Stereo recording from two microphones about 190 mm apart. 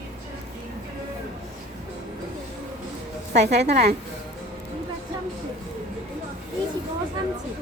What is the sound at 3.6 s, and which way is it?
Speech, 60° right (ahead or behind).